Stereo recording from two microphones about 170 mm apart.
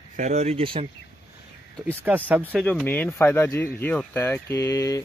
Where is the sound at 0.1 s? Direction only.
45° right (ahead or behind).